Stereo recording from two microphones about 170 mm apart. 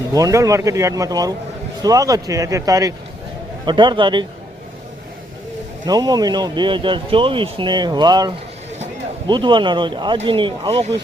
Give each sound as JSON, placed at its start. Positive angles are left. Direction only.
{"t": 0.1, "sound": "speech", "side_deg": -20}
{"t": 5.8, "sound": "speech", "side_deg": -25}